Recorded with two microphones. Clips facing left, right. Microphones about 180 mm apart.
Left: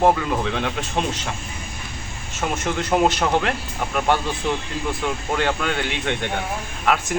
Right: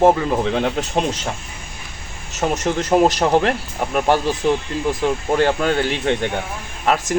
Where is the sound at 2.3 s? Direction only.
40° right (ahead or behind).